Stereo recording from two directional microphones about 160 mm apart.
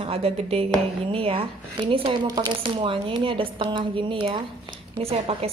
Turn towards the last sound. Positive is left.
turn(degrees=-40)  # may be behind; listen again after turning